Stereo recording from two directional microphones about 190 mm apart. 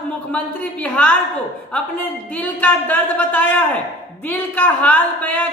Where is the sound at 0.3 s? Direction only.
5° left (ahead or behind).